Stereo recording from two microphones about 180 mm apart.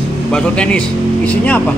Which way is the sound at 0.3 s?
5° left (ahead or behind).